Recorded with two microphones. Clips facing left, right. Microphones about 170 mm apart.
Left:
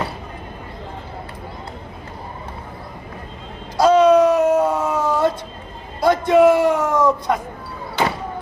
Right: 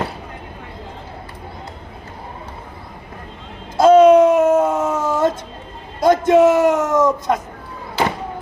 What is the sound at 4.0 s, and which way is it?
Wail, 25° right (ahead or behind).